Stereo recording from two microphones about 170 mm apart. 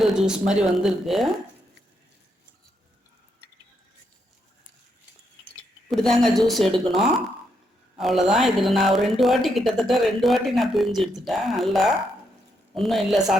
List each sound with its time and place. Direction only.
0.0 s a woman's voice: 5° right (ahead or behind)
5.9 s a woman's voice: centre (ahead or behind)